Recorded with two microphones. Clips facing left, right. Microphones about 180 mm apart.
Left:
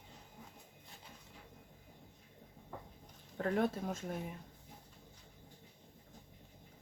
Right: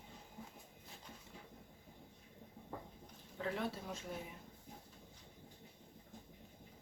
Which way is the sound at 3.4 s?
50° left (ahead or behind).